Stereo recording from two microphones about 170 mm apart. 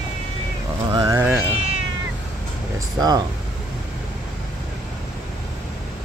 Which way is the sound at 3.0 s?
25° right (ahead or behind).